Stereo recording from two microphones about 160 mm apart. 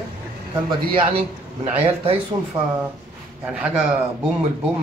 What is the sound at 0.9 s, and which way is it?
A man's voice, 35° right (ahead or behind).